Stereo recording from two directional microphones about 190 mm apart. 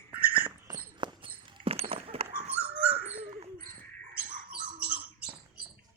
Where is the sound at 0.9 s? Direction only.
25° right (ahead or behind).